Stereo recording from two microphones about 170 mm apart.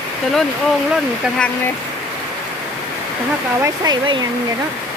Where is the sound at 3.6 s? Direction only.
20° right (ahead or behind).